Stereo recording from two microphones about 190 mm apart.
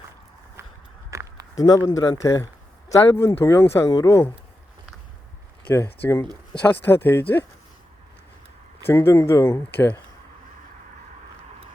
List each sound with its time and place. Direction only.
1.1 s a sound: 15° right (ahead or behind)
1.5 s speech: 20° left (ahead or behind)
5.6 s speech: 10° left (ahead or behind)
8.9 s speech: 10° left (ahead or behind)